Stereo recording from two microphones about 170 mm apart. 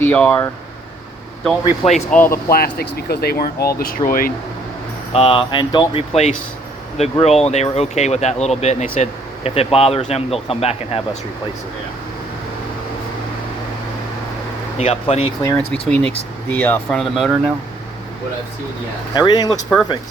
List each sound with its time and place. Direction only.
0.0 s speech: 10° left (ahead or behind)
1.6 s speech: 35° left (ahead or behind)
2.0 s speech: 10° left (ahead or behind)
2.5 s speech: 65° left (ahead or behind)
5.1 s speech: 30° left (ahead or behind)
14.8 s speech: 35° left (ahead or behind)
15.4 s speech: 10° left (ahead or behind)
19.1 s speech: 25° left (ahead or behind)